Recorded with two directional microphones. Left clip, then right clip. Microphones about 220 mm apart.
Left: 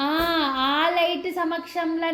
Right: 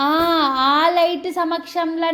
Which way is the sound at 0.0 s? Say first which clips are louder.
Right 6 dB; 25° right (ahead or behind).